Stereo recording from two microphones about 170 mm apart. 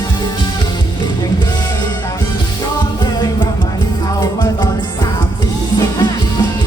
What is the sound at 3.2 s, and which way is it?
Music, 25° left (ahead or behind).